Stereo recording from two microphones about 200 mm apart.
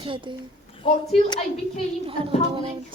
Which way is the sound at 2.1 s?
25° right (ahead or behind).